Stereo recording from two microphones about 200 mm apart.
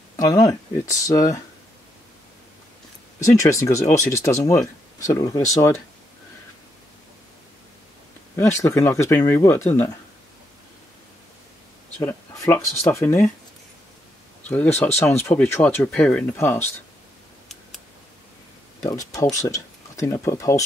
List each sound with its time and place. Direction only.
0.1 s speech: 20° left (ahead or behind)
3.3 s speech: 15° left (ahead or behind)
8.4 s speech: 15° left (ahead or behind)
12.0 s speech: 10° left (ahead or behind)
14.5 s speech: 10° left (ahead or behind)
18.8 s speech: 15° left (ahead or behind)